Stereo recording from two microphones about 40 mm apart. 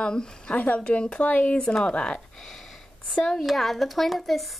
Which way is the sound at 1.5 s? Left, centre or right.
Left.